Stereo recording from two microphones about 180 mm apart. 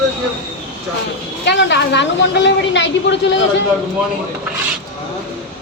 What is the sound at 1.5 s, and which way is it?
A woman's voice, 75° left (ahead or behind).